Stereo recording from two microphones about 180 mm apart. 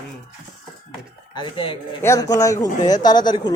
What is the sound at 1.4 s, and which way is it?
A man's voice, 30° left (ahead or behind).